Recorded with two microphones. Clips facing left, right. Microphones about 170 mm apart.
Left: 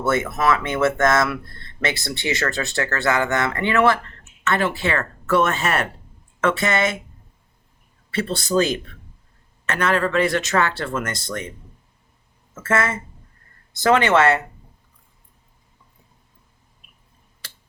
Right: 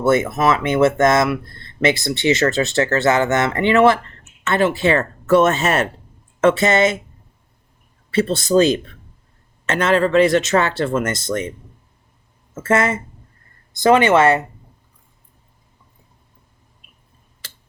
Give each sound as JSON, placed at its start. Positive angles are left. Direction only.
{"t": 0.0, "sound": "speech", "side_deg": -20}
{"t": 8.1, "sound": "speech", "side_deg": -20}
{"t": 12.5, "sound": "speech", "side_deg": -20}